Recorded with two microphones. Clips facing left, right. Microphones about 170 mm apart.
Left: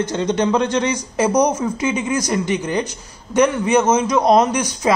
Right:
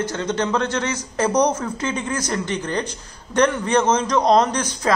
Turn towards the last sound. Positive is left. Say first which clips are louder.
# left 3 dB
turn(degrees=10)  # may be behind; listen again after turning